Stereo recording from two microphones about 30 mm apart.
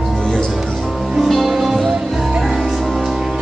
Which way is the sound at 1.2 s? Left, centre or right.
Centre.